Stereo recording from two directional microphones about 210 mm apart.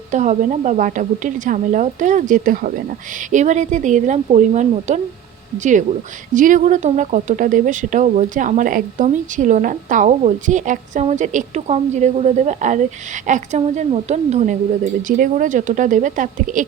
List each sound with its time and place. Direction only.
0.1 s speech: 35° right (ahead or behind)